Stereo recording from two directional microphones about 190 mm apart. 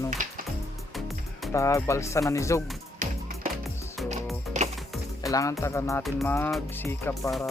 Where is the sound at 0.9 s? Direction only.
Centre (ahead or behind).